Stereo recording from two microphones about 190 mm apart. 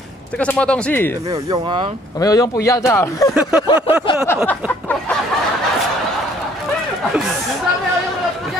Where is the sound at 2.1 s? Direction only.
20° left (ahead or behind).